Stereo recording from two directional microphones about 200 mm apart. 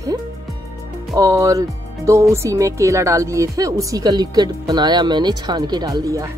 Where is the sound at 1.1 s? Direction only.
15° right (ahead or behind).